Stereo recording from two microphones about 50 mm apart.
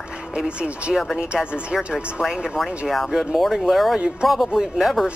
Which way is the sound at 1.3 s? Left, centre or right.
Right.